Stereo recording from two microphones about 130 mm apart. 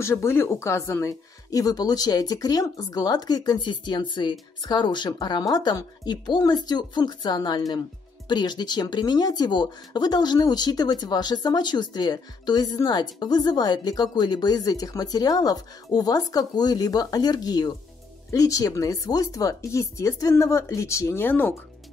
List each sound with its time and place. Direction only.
0.0 s speech: 20° left (ahead or behind)